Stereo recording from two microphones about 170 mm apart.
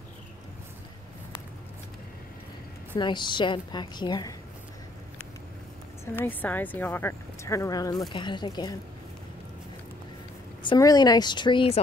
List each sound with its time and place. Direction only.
3.0 s a woman's voice: 25° left (ahead or behind)
6.1 s a woman's voice: 10° left (ahead or behind)
10.6 s a woman's voice: 25° left (ahead or behind)